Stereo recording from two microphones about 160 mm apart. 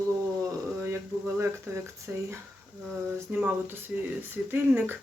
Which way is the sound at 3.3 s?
10° right (ahead or behind).